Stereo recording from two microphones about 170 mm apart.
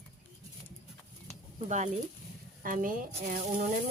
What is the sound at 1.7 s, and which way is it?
Speech, 45° right (ahead or behind).